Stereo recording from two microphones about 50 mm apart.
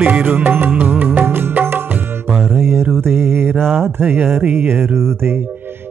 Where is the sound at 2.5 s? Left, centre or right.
Right.